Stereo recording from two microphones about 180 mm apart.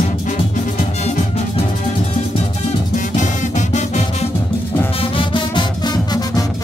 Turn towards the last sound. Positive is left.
turn(degrees=20)  # may be behind; listen again after turning